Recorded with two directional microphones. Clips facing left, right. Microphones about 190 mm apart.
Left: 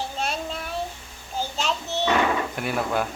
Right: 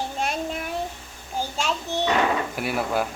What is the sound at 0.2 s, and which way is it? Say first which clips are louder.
Child singing: right 3 dB; 15° right (ahead or behind).